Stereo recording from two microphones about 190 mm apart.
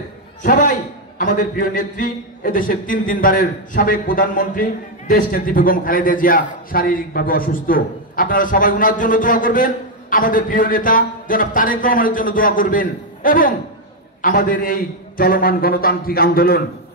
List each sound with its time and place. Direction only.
0.4 s a man's voice: 45° left (ahead or behind)